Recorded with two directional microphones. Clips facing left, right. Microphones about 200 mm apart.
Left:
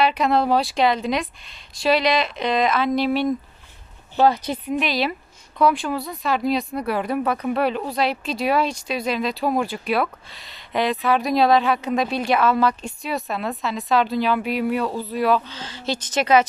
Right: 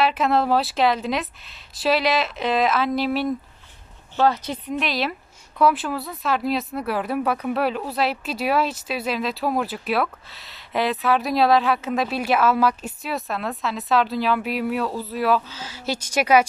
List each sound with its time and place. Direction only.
0.0 s speech: 5° right (ahead or behind)
4.2 s speech: 15° left (ahead or behind)
4.7 s speech: centre (ahead or behind)